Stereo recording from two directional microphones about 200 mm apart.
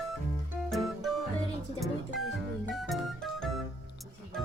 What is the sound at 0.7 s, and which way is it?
Music, centre (ahead or behind).